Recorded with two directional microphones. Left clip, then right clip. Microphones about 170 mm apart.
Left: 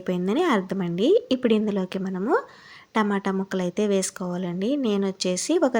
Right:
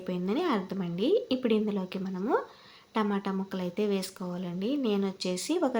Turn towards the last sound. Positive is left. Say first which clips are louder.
# left 7 dB
turn(degrees=35)  # may be behind; listen again after turning